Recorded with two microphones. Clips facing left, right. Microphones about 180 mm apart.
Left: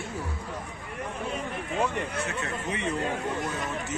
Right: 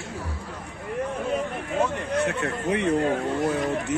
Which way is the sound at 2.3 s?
60° right (ahead or behind).